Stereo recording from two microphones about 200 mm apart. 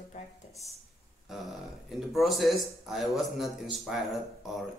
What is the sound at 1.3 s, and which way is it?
Mantra, centre (ahead or behind).